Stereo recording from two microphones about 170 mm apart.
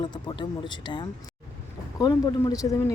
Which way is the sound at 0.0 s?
25° left (ahead or behind).